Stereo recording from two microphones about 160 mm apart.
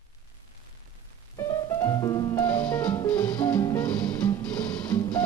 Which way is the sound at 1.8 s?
20° left (ahead or behind).